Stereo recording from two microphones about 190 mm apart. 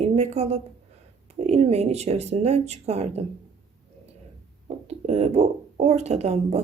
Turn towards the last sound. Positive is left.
turn(degrees=-35)  # may be behind; listen again after turning